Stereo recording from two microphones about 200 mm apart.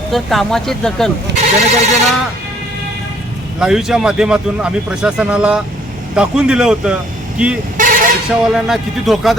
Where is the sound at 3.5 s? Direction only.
5° right (ahead or behind).